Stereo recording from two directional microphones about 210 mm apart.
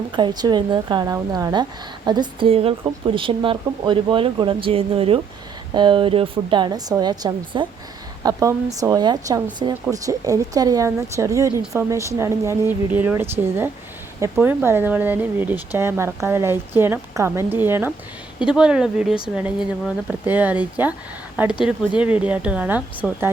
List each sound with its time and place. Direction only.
0.2 s a woman's voice: 20° right (ahead or behind)